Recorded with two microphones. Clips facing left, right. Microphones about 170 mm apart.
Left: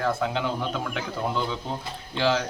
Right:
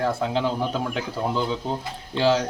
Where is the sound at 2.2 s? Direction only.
35° right (ahead or behind).